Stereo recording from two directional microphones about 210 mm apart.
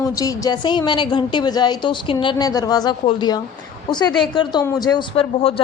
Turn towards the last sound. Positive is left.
turn(degrees=25)  # may be behind; listen again after turning